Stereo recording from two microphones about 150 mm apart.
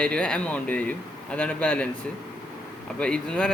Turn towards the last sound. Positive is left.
turn(degrees=5)  # may be behind; listen again after turning